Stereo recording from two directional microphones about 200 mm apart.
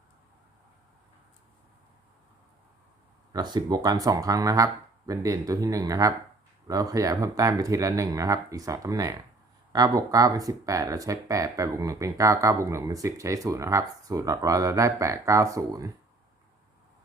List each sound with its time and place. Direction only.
3.3 s speech: 20° right (ahead or behind)